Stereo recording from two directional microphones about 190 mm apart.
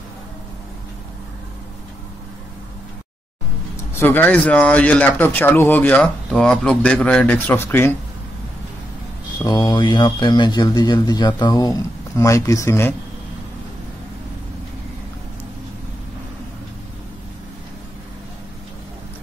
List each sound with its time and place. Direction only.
4.0 s speech: 10° left (ahead or behind)
9.4 s speech: 20° left (ahead or behind)